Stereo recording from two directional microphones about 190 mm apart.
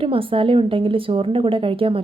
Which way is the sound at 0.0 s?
30° right (ahead or behind).